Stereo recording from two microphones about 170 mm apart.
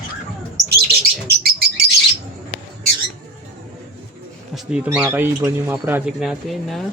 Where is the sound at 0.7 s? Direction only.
65° right (ahead or behind).